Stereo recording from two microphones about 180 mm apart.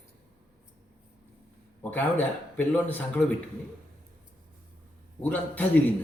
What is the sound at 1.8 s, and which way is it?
A man's voice, 10° left (ahead or behind).